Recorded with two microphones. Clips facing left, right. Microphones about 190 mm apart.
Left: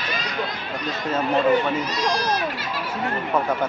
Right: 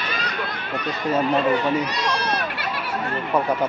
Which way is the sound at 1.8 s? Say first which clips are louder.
Left 1 dB; 65° right (ahead or behind).